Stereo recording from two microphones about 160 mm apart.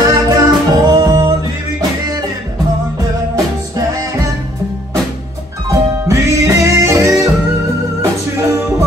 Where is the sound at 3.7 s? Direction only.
20° right (ahead or behind).